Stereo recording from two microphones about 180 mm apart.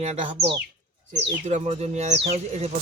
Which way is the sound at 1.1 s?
40° right (ahead or behind).